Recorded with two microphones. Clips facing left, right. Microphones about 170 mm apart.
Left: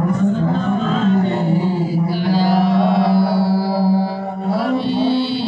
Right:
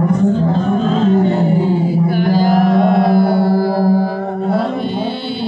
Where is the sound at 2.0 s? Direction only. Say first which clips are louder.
Right 2 dB; 50° right (ahead or behind).